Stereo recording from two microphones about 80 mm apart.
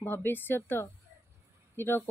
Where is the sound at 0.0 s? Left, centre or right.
Left.